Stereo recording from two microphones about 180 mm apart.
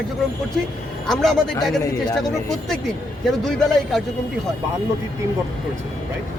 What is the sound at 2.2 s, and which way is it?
Speech, 5° left (ahead or behind).